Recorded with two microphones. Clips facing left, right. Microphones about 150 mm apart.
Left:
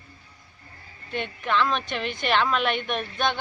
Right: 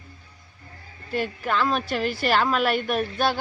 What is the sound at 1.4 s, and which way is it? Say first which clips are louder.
Speech: left 1 dB; 40° right (ahead or behind).